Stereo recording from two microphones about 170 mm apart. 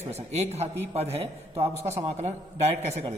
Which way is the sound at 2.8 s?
40° right (ahead or behind).